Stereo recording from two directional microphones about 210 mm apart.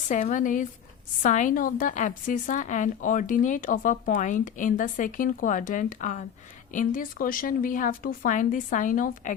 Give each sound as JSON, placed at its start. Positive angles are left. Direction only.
{"t": 0.1, "sound": "a woman's voice", "side_deg": 35}